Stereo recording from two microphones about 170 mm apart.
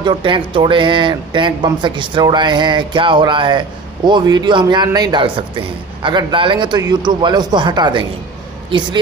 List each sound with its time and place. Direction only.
0.0 s speech: 30° right (ahead or behind)